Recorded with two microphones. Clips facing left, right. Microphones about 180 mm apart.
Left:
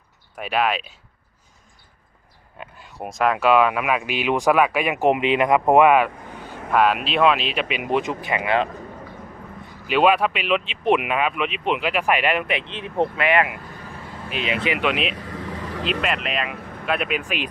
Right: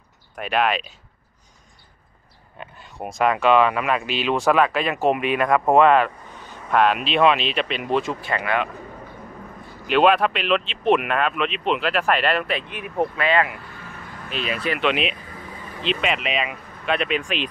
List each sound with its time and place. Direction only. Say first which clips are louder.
0.4 s speech: right 1 dB; 5° left (ahead or behind)
2.6 s speech: even; 5° left (ahead or behind)
9.8 s speech: right 1 dB; 5° left (ahead or behind)
14.8 s speech: right 1 dB; centre (ahead or behind)
15.1 s vehicle: left 7 dB; 85° left
15.8 s speech: right 2 dB; 5° left (ahead or behind)